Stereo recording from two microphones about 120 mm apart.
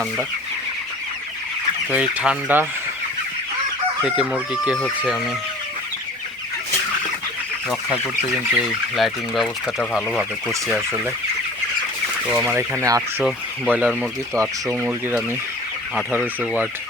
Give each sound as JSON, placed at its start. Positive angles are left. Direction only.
{"t": 1.9, "sound": "speech", "side_deg": -10}
{"t": 4.0, "sound": "speech", "side_deg": -5}
{"t": 8.4, "sound": "speech", "side_deg": 0}
{"t": 12.5, "sound": "speech", "side_deg": -20}
{"t": 16.2, "sound": "speech", "side_deg": -15}